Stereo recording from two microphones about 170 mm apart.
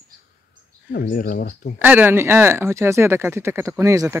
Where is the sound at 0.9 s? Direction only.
55° left (ahead or behind).